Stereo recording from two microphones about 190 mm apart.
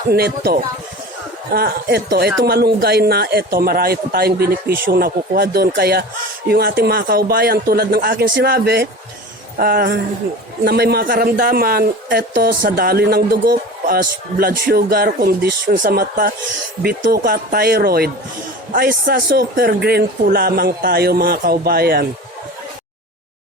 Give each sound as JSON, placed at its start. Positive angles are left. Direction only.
{"t": 0.1, "sound": "speech", "side_deg": -55}
{"t": 15.8, "sound": "speech", "side_deg": -50}